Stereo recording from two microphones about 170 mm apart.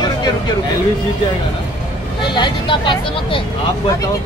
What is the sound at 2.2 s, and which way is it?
Speech, 25° left (ahead or behind).